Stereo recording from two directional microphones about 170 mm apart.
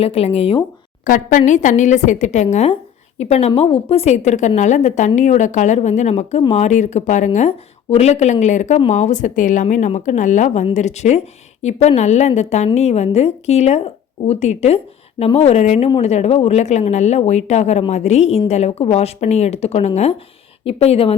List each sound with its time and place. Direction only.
0.0 s speech: 35° left (ahead or behind)
1.0 s a woman's voice: 50° left (ahead or behind); by 21.2 s 35° left (ahead or behind)